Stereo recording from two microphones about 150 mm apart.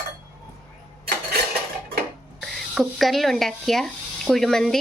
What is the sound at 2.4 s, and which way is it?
Speech, centre (ahead or behind).